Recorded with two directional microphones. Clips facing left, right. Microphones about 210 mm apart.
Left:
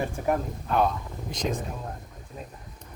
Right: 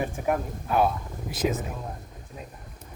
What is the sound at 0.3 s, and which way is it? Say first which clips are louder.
Speech: left 1 dB; 5° right (ahead or behind).